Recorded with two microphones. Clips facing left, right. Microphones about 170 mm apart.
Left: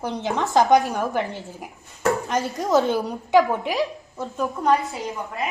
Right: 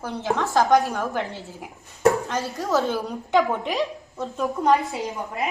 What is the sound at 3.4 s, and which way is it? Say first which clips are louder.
A woman's voice: left 2 dB; centre (ahead or behind).